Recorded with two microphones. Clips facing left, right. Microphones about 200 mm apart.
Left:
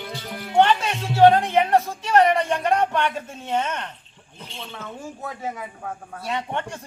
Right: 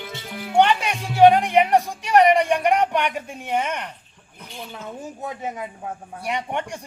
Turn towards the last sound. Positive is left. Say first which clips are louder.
# right 1 dB
turn(degrees=-15)  # may be behind; listen again after turning